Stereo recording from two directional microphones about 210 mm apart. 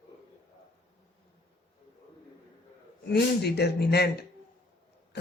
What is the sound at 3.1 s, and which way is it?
Speech, 50° left (ahead or behind).